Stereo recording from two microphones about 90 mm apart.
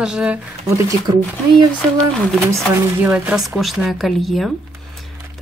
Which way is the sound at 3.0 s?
15° right (ahead or behind).